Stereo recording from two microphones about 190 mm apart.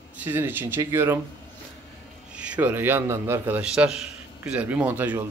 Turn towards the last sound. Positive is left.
turn(degrees=-10)  # may be behind; listen again after turning